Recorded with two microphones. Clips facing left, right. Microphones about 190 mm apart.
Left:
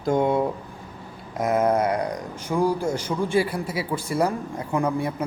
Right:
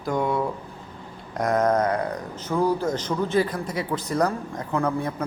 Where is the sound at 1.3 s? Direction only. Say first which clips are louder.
Even; 5° left (ahead or behind).